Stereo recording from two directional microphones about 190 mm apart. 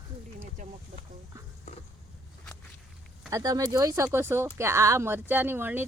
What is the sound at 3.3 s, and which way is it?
Speech, 20° right (ahead or behind).